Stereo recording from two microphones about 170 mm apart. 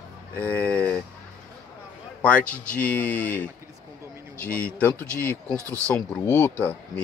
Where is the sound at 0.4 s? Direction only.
10° left (ahead or behind).